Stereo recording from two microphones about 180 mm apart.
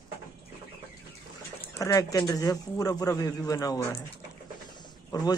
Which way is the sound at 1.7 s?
20° left (ahead or behind).